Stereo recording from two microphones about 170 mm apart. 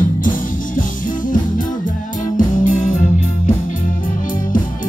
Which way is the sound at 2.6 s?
50° left (ahead or behind).